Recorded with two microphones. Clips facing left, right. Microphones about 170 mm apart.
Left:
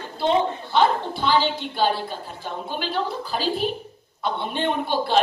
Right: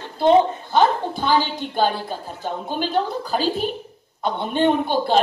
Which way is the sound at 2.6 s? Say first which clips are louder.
Right 4 dB; 45° right (ahead or behind).